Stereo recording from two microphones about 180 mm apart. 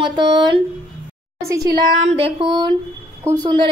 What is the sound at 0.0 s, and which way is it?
Speech, 25° right (ahead or behind).